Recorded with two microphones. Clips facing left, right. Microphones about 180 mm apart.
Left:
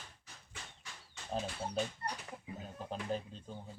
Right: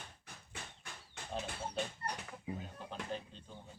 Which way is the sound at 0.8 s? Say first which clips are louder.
Right 2 dB; 55° right (ahead or behind).